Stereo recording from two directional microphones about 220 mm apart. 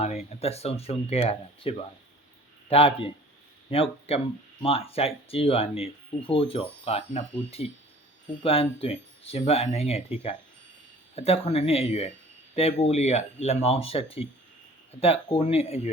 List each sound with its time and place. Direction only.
0.0 s speech: 30° left (ahead or behind)